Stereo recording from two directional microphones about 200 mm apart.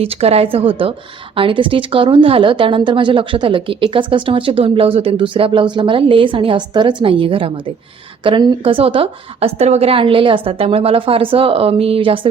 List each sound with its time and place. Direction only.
0.0 s a woman's voice: 30° right (ahead or behind)